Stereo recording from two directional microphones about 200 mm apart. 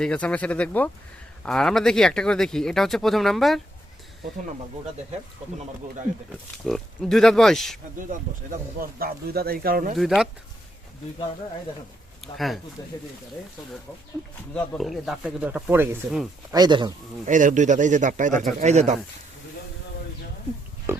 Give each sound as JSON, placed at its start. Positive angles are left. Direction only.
{"t": 0.0, "sound": "speech", "side_deg": 5}
{"t": 6.1, "sound": "speech", "side_deg": -40}
{"t": 6.7, "sound": "speech", "side_deg": 0}
{"t": 8.1, "sound": "speech", "side_deg": -45}
{"t": 9.9, "sound": "speech", "side_deg": 0}
{"t": 12.2, "sound": "speech", "side_deg": 0}
{"t": 14.5, "sound": "speech", "side_deg": 5}
{"t": 17.2, "sound": "speech", "side_deg": -40}
{"t": 20.9, "sound": "speech", "side_deg": -15}